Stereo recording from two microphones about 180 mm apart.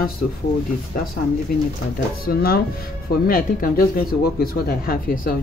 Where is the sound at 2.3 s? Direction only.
55° left (ahead or behind).